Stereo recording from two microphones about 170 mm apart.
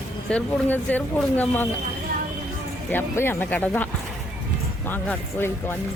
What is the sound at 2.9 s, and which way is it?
Speech, 10° left (ahead or behind).